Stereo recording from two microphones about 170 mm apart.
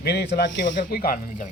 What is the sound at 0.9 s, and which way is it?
Speech, 60° left (ahead or behind).